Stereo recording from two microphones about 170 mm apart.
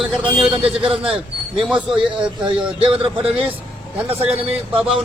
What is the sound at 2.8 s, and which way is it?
Speech, 30° right (ahead or behind).